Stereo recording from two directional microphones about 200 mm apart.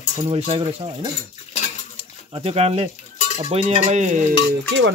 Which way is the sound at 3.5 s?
35° right (ahead or behind).